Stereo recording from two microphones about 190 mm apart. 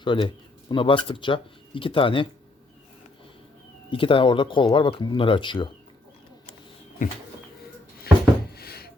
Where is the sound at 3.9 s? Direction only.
25° left (ahead or behind).